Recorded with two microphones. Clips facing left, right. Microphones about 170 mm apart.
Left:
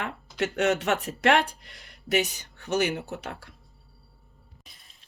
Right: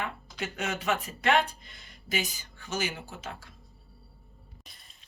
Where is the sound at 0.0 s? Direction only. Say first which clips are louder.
Left 6 dB; 75° left (ahead or behind).